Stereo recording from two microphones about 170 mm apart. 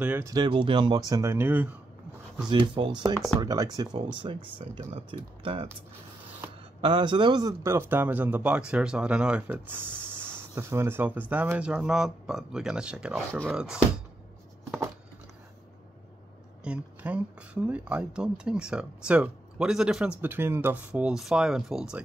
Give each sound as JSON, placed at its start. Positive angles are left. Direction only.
{"t": 0.0, "sound": "speech", "side_deg": -10}
{"t": 0.3, "sound": "speech", "side_deg": -25}
{"t": 2.4, "sound": "speech", "side_deg": -25}
{"t": 6.8, "sound": "speech", "side_deg": -30}
{"t": 16.6, "sound": "speech", "side_deg": -5}